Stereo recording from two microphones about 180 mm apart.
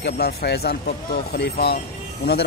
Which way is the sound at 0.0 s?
65° left (ahead or behind).